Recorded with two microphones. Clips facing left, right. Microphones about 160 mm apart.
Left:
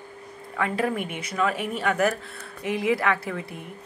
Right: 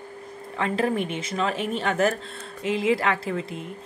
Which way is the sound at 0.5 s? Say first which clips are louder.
Right 1 dB; 25° right (ahead or behind).